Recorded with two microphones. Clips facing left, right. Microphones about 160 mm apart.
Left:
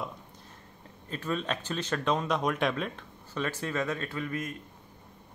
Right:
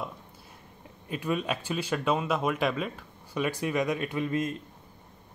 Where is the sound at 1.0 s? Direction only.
10° right (ahead or behind).